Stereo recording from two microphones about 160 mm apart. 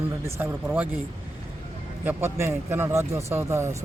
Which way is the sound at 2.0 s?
15° right (ahead or behind).